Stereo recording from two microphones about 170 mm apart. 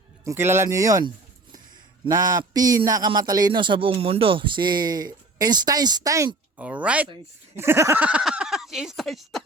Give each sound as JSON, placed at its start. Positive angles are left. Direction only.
{"t": 0.3, "sound": "speech", "side_deg": -15}
{"t": 6.6, "sound": "speech", "side_deg": -5}